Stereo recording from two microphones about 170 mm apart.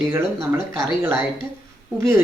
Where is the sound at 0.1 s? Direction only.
15° right (ahead or behind).